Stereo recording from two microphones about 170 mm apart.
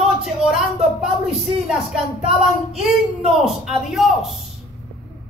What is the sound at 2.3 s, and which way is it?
Speech, 35° right (ahead or behind).